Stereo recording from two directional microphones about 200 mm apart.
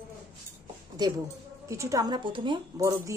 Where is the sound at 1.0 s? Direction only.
20° right (ahead or behind).